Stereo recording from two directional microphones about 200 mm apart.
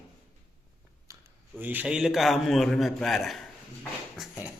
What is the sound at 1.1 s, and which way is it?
A man's voice, 10° right (ahead or behind).